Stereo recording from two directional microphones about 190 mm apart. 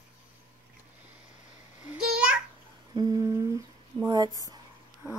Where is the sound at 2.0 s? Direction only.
5° right (ahead or behind).